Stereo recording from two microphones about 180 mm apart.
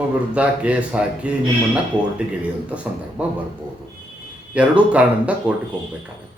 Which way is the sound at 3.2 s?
5° right (ahead or behind).